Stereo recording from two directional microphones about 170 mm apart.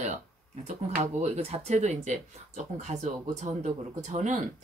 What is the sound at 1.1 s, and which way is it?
Speech, 40° right (ahead or behind).